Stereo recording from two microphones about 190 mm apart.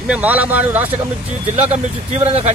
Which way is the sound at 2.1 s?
35° right (ahead or behind).